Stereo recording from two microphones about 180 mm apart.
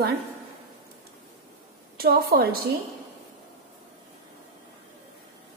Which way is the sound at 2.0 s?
60° right (ahead or behind).